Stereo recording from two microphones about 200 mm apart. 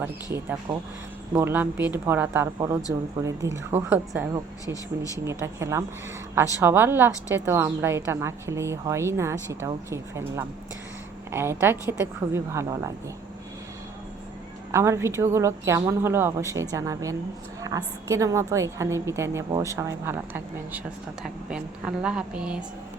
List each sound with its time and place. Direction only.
0.0 s a woman's voice: 15° right (ahead or behind)
4.6 s speech: 15° left (ahead or behind)
5.2 s a woman's voice: 15° right (ahead or behind)
14.7 s a woman's voice: 15° right (ahead or behind)